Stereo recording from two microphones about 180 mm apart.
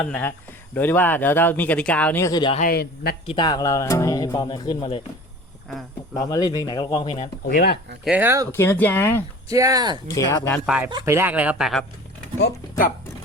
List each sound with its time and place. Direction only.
0.0 s speech: 10° left (ahead or behind)
2.6 s a man's voice: 60° left (ahead or behind)
3.2 s speech: 25° left (ahead or behind)
6.1 s speech: 20° left (ahead or behind)
7.4 s a man's voice: 55° left (ahead or behind)
8.0 s speech: 10° right (ahead or behind)
8.5 s speech: 10° left (ahead or behind)
9.5 s speech: 20° right (ahead or behind)
10.1 s speech: 15° left (ahead or behind)
10.9 s speech: 15° right (ahead or behind)
12.4 s a man's voice: 65° left (ahead or behind)